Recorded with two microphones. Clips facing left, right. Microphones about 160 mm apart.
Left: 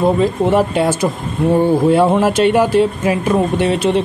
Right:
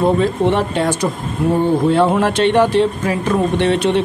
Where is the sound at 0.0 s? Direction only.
5° left (ahead or behind).